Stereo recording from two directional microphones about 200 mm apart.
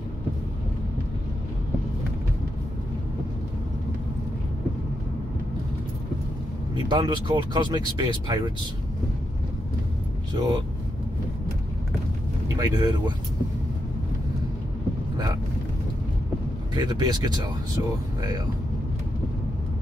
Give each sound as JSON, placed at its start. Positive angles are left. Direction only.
{"t": 6.7, "sound": "speech", "side_deg": -20}
{"t": 10.3, "sound": "speech", "side_deg": -20}
{"t": 12.5, "sound": "speech", "side_deg": -20}
{"t": 16.7, "sound": "speech", "side_deg": -20}